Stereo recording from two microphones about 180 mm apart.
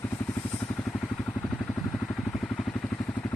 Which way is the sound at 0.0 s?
15° left (ahead or behind).